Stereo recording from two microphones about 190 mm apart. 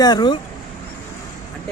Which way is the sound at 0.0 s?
20° left (ahead or behind).